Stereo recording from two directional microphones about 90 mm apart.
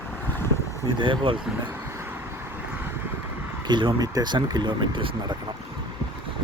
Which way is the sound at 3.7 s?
55° right (ahead or behind).